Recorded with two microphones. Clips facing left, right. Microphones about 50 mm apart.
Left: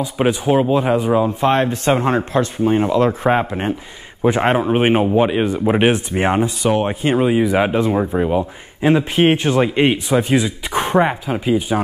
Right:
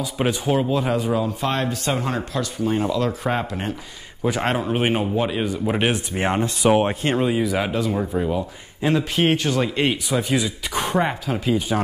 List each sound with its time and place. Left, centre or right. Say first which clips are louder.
0.2 s speech: left 5 dB; centre
6.6 s speech: even; centre
7.0 s speech: left 5 dB; centre; by 11.0 s left
11.0 s speech: left 6 dB; centre